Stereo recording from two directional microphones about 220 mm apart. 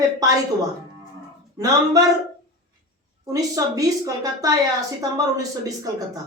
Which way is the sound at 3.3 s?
15° right (ahead or behind).